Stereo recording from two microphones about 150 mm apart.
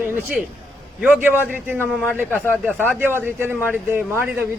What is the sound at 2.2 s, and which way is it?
Speech, 10° left (ahead or behind).